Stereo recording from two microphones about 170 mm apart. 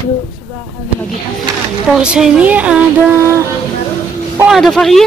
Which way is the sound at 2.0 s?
5° right (ahead or behind).